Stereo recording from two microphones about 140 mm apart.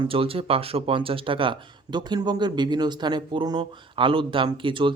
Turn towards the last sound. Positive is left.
turn(degrees=-35)  # may be behind; listen again after turning